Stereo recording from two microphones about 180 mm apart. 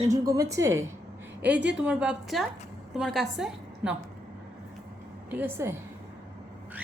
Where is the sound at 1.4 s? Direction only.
70° right (ahead or behind).